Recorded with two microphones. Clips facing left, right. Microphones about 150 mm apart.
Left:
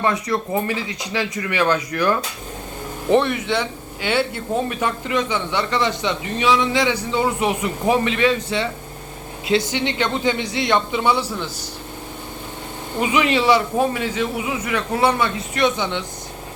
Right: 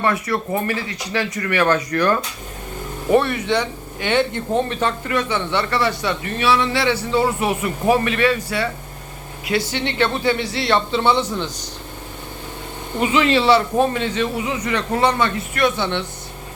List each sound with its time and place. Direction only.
0.0 s speech: 15° left (ahead or behind)
3.2 s speech: 15° left (ahead or behind)
13.0 s speech: 15° left (ahead or behind)